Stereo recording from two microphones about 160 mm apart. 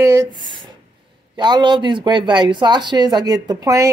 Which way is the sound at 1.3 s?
25° right (ahead or behind).